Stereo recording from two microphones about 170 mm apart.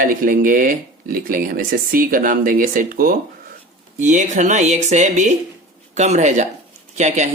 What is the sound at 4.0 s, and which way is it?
Speech, 45° right (ahead or behind).